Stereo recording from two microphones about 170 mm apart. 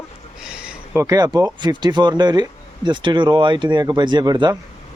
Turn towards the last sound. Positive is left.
turn(degrees=-25)  # may be behind; listen again after turning